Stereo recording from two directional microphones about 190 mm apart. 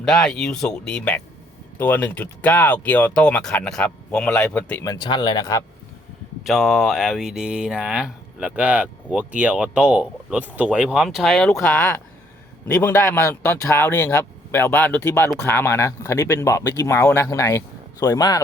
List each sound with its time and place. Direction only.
0.0 s speech: centre (ahead or behind); by 5.6 s 20° left (ahead or behind)
6.4 s speech: centre (ahead or behind); by 18.4 s 20° left (ahead or behind)